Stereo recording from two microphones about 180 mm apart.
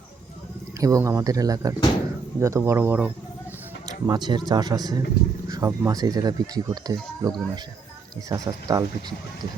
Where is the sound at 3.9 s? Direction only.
20° right (ahead or behind).